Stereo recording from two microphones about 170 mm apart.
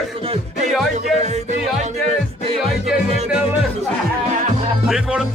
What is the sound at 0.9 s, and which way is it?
Music, 45° right (ahead or behind).